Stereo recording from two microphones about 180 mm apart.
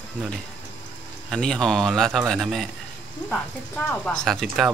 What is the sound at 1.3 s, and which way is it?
Speech, 5° left (ahead or behind).